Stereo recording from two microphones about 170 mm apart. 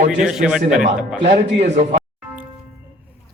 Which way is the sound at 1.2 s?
40° right (ahead or behind).